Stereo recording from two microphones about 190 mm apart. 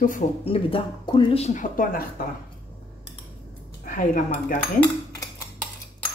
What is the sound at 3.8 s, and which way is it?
Speech, 45° left (ahead or behind).